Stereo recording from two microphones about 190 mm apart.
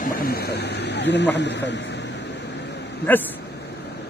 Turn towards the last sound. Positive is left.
turn(degrees=10)  # may be behind; listen again after turning